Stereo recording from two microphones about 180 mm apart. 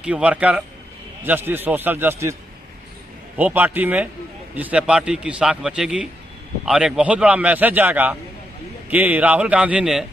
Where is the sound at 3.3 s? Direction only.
10° right (ahead or behind).